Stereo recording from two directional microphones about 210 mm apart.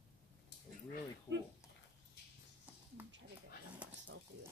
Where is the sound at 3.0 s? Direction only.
10° right (ahead or behind).